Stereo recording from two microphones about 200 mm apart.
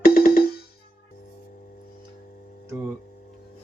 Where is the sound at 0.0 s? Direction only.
50° left (ahead or behind).